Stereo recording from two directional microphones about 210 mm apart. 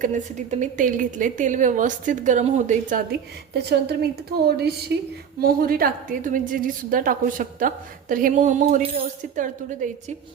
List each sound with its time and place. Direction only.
0.0 s a woman's voice: 35° right (ahead or behind)